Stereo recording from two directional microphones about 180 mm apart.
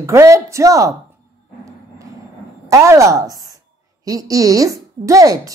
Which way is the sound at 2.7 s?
15° right (ahead or behind).